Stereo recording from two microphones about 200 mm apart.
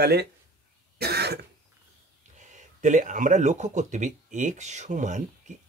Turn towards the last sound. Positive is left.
turn(degrees=-40)  # may be behind; listen again after turning